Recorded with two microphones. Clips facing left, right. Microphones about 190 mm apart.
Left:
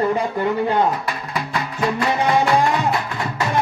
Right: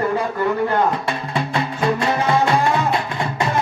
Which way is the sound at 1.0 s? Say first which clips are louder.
Right 3 dB; 30° right (ahead or behind).